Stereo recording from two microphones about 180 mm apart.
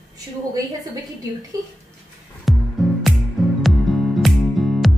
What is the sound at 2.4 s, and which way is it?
Music, centre (ahead or behind).